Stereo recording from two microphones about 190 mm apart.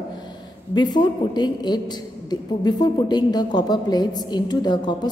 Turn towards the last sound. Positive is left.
turn(degrees=25)  # may be behind; listen again after turning